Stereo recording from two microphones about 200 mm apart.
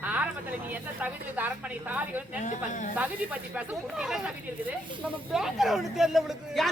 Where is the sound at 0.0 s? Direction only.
10° right (ahead or behind).